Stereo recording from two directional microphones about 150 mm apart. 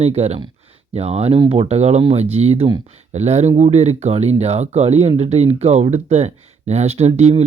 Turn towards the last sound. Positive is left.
turn(degrees=-45)  # may be behind; listen again after turning